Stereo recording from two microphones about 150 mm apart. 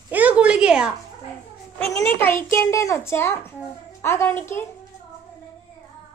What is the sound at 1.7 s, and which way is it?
A child's voice, 15° left (ahead or behind).